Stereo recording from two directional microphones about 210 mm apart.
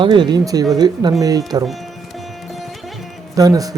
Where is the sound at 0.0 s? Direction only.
20° right (ahead or behind).